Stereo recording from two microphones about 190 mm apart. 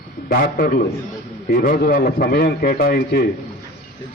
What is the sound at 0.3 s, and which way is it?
A man's voice, 55° left (ahead or behind).